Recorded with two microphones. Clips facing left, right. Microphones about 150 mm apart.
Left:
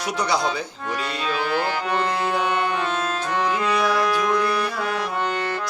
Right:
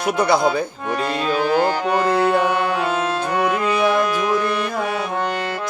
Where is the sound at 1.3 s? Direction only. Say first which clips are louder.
Right 6 dB; 40° right (ahead or behind).